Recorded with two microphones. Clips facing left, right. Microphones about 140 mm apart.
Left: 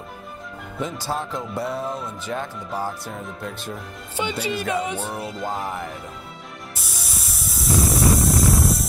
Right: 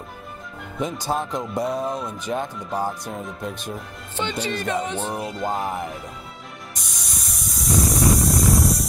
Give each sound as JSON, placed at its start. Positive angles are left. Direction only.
{"t": 0.7, "sound": "speech", "side_deg": -15}
{"t": 4.2, "sound": "music", "side_deg": 10}
{"t": 5.0, "sound": "speech", "side_deg": -15}
{"t": 5.3, "sound": "music", "side_deg": 0}
{"t": 5.6, "sound": "speech", "side_deg": -20}
{"t": 6.7, "sound": "spray", "side_deg": 5}